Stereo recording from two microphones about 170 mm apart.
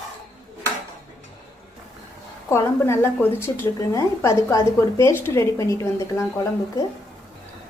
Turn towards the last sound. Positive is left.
turn(degrees=20)  # may be behind; listen again after turning